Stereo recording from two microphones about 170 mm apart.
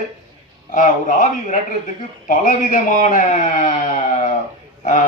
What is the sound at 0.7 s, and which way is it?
Speech, 50° left (ahead or behind).